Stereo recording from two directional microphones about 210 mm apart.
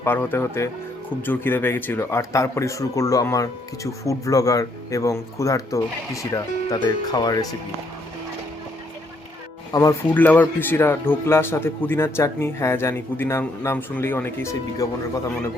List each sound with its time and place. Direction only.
0.0 s a man's voice: 10° left (ahead or behind)
9.7 s a man's voice: 10° left (ahead or behind)